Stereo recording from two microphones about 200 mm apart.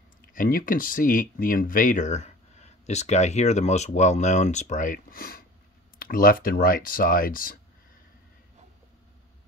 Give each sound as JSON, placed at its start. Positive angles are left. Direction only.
{"t": 0.3, "sound": "speech", "side_deg": 45}